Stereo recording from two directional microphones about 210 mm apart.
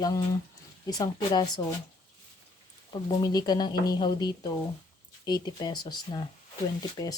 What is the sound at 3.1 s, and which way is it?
Speech, 20° left (ahead or behind).